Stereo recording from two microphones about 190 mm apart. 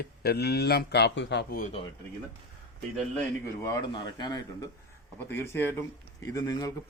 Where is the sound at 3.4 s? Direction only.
15° left (ahead or behind).